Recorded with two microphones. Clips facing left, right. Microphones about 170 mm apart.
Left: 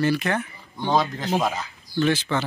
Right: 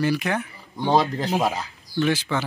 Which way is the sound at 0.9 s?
35° right (ahead or behind).